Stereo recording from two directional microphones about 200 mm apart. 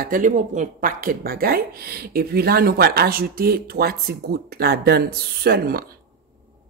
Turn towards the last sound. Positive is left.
turn(degrees=-50)  # may be behind; listen again after turning